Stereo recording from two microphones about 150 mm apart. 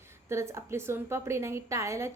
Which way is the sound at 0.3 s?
20° right (ahead or behind).